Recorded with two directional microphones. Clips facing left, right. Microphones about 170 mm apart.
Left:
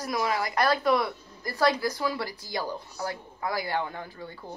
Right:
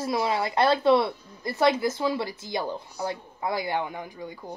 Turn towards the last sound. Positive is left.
turn(degrees=-15)  # may be behind; listen again after turning